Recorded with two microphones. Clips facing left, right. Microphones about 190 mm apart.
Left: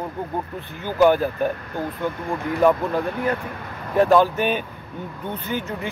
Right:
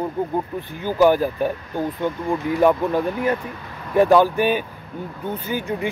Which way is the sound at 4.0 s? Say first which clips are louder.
Right 2 dB; 15° right (ahead or behind).